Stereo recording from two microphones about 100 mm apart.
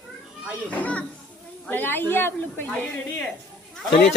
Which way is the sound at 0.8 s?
15° left (ahead or behind).